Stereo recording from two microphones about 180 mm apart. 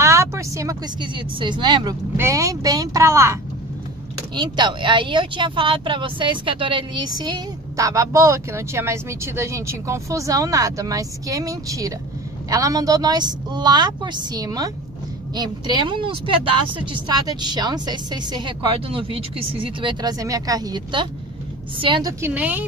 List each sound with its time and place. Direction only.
0.0 s speech: 15° right (ahead or behind)
4.4 s speech: 25° right (ahead or behind)
22.2 s speech: 10° right (ahead or behind)